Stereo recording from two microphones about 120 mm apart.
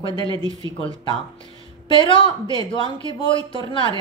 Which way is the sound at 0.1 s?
35° right (ahead or behind).